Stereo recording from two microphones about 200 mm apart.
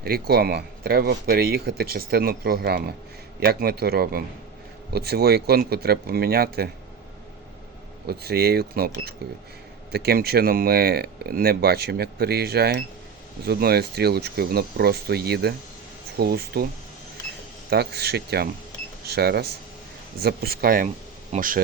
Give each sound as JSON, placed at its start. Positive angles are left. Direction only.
{"t": 0.0, "sound": "speech", "side_deg": -50}
{"t": 8.0, "sound": "speech", "side_deg": -50}
{"t": 17.7, "sound": "speech", "side_deg": -55}